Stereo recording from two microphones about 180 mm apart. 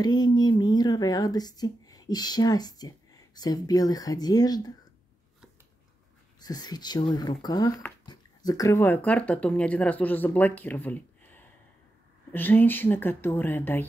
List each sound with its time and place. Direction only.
0.0 s speech: 20° left (ahead or behind)
6.4 s a woman's voice: 20° left (ahead or behind)